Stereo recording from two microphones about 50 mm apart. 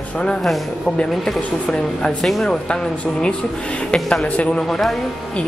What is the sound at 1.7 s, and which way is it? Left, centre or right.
Speech, centre.